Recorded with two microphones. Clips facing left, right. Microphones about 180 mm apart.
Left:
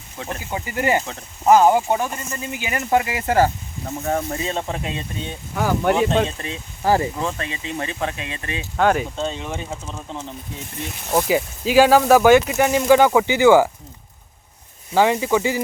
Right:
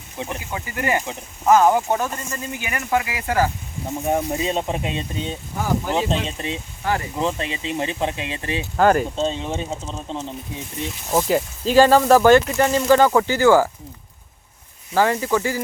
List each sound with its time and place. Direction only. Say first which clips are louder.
0.2 s speech: right 1 dB; 20° right (ahead or behind)
0.5 s speech: left 3 dB; 25° left (ahead or behind)
1.7 s speech: left 1 dB; 5° left (ahead or behind)
2.5 s speech: left 3 dB; 25° left (ahead or behind)
3.8 s speech: right 2 dB; 15° right (ahead or behind)
5.5 s speech: left 3 dB; 75° left (ahead or behind)
6.2 s speech: even; 20° right (ahead or behind)
6.8 s speech: left 5 dB; 35° left (ahead or behind)
7.2 s speech: right 2 dB; 20° right (ahead or behind)
8.7 s speech: right 2 dB; centre (ahead or behind)
9.1 s speech: right 3 dB; 25° right (ahead or behind)
11.3 s speech: even; 5° left (ahead or behind); by 13.7 s 20° left (ahead or behind)
14.9 s speech: left 2 dB; 20° left (ahead or behind)